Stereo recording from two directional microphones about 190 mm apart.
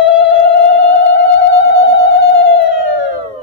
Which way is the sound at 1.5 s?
70° left (ahead or behind).